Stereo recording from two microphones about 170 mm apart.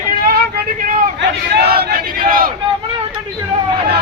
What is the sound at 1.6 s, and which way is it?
Speech, 65° right (ahead or behind).